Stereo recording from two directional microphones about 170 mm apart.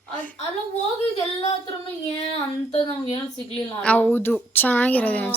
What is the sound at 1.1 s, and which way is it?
Speech, 35° left (ahead or behind).